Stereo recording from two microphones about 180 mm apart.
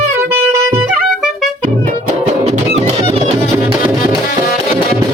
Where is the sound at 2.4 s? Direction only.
40° right (ahead or behind).